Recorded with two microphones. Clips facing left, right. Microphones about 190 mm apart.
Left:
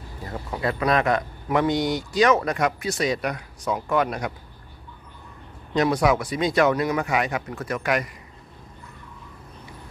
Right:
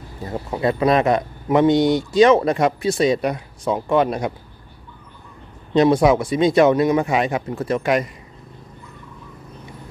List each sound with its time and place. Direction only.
0.2 s speech: 25° right (ahead or behind)
5.7 s speech: 25° right (ahead or behind)